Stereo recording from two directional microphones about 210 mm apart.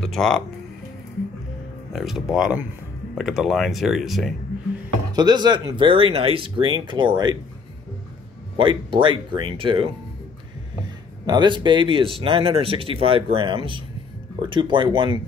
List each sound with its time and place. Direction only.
0.0 s speech: centre (ahead or behind)
1.9 s speech: centre (ahead or behind)
5.1 s speech: 20° right (ahead or behind)
8.5 s speech: 25° right (ahead or behind)
11.2 s speech: 20° right (ahead or behind)